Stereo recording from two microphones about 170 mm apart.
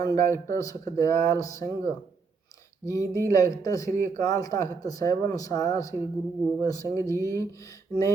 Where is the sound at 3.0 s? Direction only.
15° right (ahead or behind).